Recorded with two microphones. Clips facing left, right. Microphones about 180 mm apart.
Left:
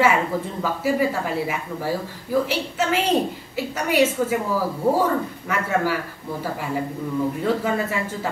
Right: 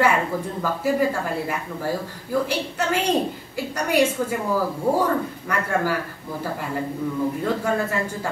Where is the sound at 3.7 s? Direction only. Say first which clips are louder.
Even; 5° left (ahead or behind).